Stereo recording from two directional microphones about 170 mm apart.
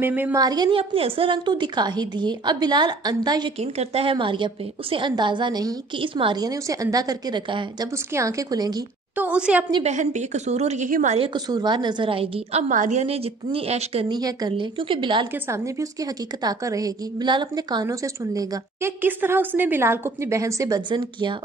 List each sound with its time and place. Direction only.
0.0 s a woman's voice: 10° right (ahead or behind)
0.4 s a woman's voice: 25° right (ahead or behind)
3.5 s a woman's voice: 40° right (ahead or behind); by 8.8 s 25° right (ahead or behind)
9.1 s a woman's voice: 10° right (ahead or behind)
9.8 s a woman's voice: 45° right (ahead or behind)
11.1 s a woman's voice: 25° right (ahead or behind)
12.6 s a woman's voice: 50° right (ahead or behind)
14.0 s a woman's voice: 25° right (ahead or behind)
15.3 s a woman's voice: 15° right (ahead or behind)